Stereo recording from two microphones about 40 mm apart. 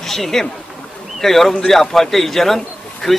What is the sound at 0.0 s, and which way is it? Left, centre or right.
A man's voice, centre.